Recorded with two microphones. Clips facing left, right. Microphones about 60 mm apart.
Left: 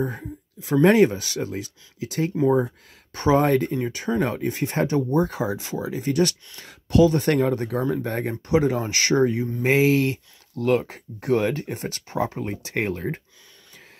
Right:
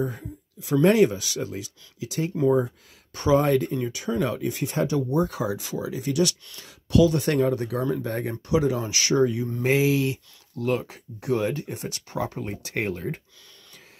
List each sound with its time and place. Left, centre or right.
0.0 s speech: left
2.4 s speech: left
3.1 s speech: left
12.1 s speech: left